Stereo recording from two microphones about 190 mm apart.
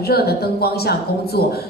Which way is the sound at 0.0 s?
55° left (ahead or behind).